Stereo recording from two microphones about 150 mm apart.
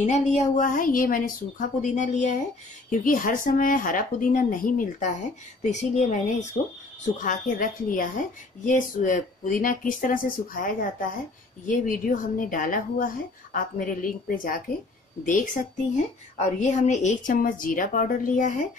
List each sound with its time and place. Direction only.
0.0 s a woman's voice: 50° left (ahead or behind)
2.9 s a woman's voice: 65° left (ahead or behind)
7.2 s a woman's voice: 60° left (ahead or behind)